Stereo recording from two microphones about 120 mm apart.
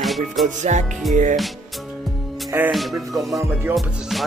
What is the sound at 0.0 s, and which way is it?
Music, centre (ahead or behind).